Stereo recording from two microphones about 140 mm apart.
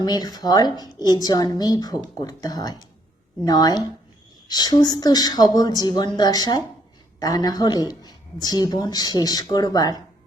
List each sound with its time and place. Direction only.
0.0 s a woman's voice: 30° left (ahead or behind)